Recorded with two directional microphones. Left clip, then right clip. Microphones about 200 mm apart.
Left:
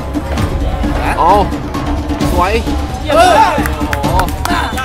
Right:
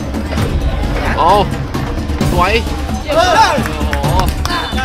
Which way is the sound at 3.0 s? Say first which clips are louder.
Left 4 dB; 50° left (ahead or behind).